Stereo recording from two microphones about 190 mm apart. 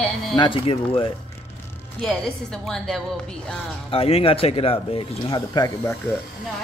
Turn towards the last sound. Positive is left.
turn(degrees=15)  # may be behind; listen again after turning